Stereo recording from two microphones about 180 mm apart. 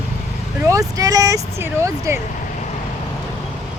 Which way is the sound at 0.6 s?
20° right (ahead or behind).